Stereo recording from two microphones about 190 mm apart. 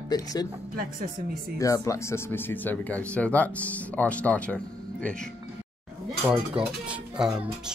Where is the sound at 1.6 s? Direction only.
15° left (ahead or behind).